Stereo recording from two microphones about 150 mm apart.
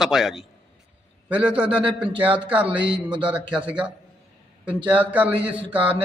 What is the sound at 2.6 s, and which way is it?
Speech, 35° right (ahead or behind).